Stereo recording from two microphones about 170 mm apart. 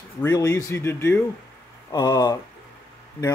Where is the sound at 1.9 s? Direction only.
25° left (ahead or behind).